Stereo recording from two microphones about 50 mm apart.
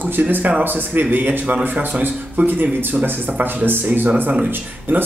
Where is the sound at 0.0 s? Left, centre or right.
Right.